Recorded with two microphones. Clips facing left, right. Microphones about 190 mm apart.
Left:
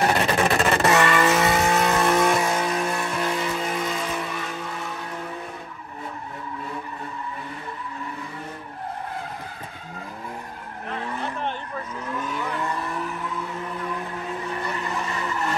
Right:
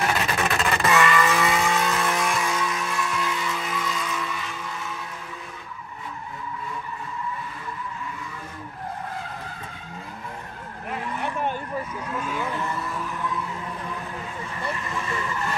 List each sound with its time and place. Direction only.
0.0 s vehicle: 35° left (ahead or behind)